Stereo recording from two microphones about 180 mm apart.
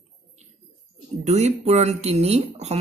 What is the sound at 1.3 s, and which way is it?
Speech, 40° right (ahead or behind).